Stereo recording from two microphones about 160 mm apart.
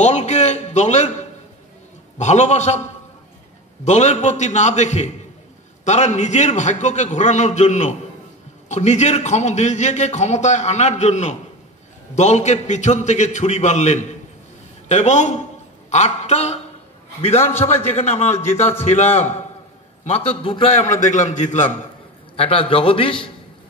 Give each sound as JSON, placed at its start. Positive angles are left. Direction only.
{"t": 0.0, "sound": "a man's voice", "side_deg": 45}
{"t": 21.1, "sound": "a man's voice", "side_deg": 50}
{"t": 22.4, "sound": "a man's voice", "side_deg": 35}